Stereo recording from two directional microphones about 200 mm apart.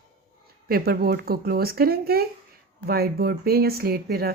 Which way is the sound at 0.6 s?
50° right (ahead or behind).